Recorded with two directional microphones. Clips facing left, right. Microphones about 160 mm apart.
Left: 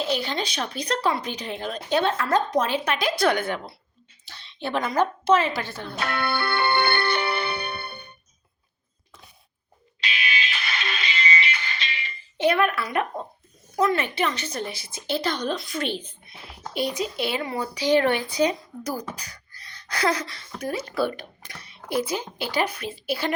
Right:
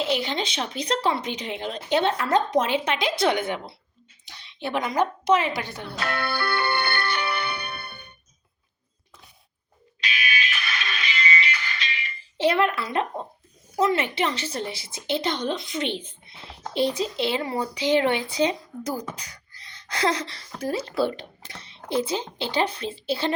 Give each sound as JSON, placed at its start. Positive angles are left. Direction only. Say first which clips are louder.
{"t": 0.0, "sound": "a woman's voice", "louder": "right 1 dB", "side_deg": -20}
{"t": 5.9, "sound": "music", "louder": "left 2 dB", "side_deg": 25}
{"t": 10.0, "sound": "music", "louder": "even", "side_deg": 25}
{"t": 12.4, "sound": "a woman's voice", "louder": "even", "side_deg": -30}